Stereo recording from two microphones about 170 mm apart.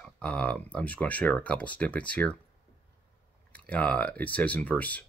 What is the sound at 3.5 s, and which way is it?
Speech, 10° left (ahead or behind).